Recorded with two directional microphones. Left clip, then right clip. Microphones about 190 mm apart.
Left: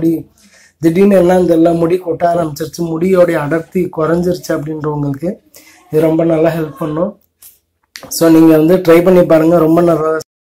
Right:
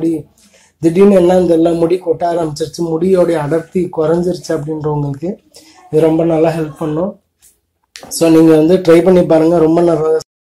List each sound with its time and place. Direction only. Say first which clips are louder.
0.7 s a man's voice: right 1 dB; 20° left (ahead or behind)
7.9 s a man's voice: left 1 dB; 25° left (ahead or behind)